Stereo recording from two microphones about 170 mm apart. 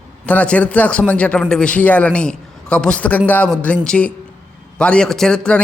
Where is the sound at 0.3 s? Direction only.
10° left (ahead or behind).